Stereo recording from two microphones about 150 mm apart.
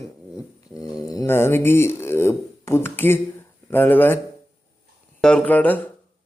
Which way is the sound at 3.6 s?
15° left (ahead or behind).